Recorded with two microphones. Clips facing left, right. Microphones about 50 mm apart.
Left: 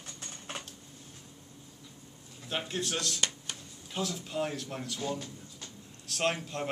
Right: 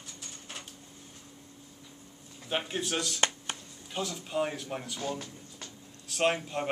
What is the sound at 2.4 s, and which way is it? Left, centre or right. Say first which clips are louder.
Speech: right 2 dB; centre.